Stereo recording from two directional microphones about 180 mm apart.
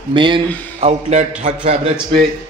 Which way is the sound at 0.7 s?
35° right (ahead or behind).